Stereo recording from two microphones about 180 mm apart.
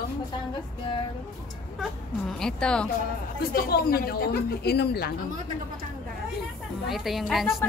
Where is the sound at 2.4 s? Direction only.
5° left (ahead or behind).